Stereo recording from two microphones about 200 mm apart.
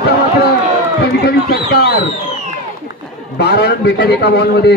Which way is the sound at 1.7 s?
55° left (ahead or behind).